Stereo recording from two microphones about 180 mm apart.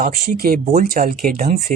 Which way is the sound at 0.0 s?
50° right (ahead or behind).